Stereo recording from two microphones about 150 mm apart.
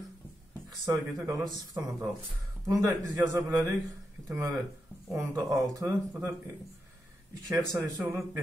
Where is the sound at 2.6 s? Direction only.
25° right (ahead or behind).